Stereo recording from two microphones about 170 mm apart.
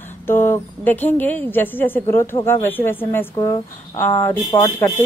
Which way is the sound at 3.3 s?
25° left (ahead or behind).